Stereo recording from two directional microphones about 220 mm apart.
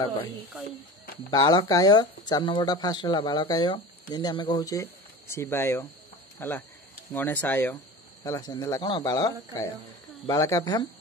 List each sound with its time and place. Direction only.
1.3 s speech: 20° left (ahead or behind)